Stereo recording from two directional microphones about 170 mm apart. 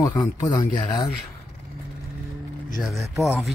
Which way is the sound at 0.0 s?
25° left (ahead or behind).